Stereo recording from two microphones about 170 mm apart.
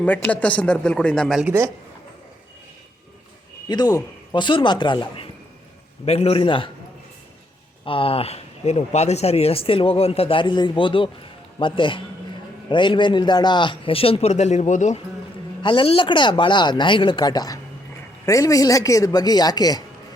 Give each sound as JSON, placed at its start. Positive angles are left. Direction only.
{"t": 0.0, "sound": "a man's voice", "side_deg": 10}
{"t": 1.5, "sound": "speech", "side_deg": -15}
{"t": 3.7, "sound": "speech", "side_deg": 25}
{"t": 7.9, "sound": "speech", "side_deg": 30}
{"t": 15.6, "sound": "speech", "side_deg": 30}